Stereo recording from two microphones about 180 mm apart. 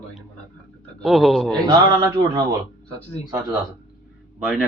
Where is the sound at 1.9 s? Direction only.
25° right (ahead or behind).